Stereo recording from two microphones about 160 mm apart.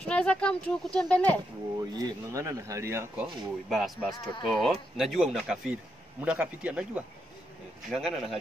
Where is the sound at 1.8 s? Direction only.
20° right (ahead or behind).